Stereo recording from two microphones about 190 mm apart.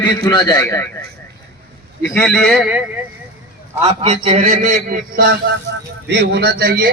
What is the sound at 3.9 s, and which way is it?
A man's voice, 30° right (ahead or behind).